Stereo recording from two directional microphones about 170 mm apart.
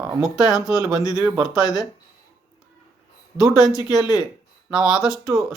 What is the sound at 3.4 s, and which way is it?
Speech, centre (ahead or behind).